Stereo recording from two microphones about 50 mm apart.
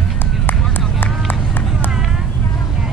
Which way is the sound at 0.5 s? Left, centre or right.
Left.